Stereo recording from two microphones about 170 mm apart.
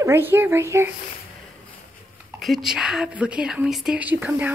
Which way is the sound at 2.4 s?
Centre (ahead or behind).